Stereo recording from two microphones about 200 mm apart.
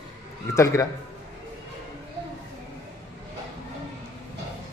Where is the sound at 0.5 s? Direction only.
15° left (ahead or behind).